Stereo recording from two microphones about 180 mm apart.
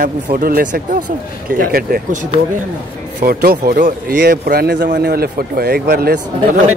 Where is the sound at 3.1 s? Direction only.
60° right (ahead or behind).